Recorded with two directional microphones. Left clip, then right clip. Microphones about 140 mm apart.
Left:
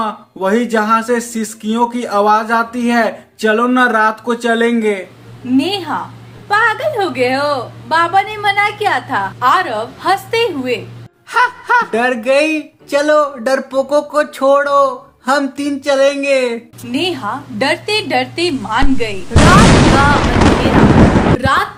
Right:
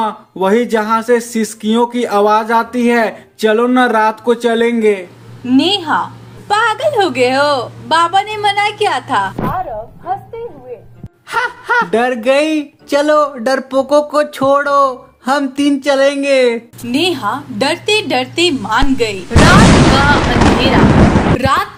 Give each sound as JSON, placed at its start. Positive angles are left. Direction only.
{"t": 0.0, "sound": "speech", "side_deg": -40}
{"t": 5.5, "sound": "a woman's voice", "side_deg": -20}
{"t": 11.3, "sound": "speech", "side_deg": -35}
{"t": 19.6, "sound": "artillery fire", "side_deg": 0}
{"t": 21.4, "sound": "speech", "side_deg": -35}